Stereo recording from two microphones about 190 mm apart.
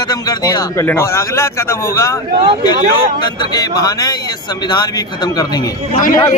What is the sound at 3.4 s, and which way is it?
Speech, 20° left (ahead or behind).